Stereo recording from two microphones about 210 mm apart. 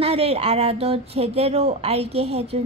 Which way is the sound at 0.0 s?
30° right (ahead or behind).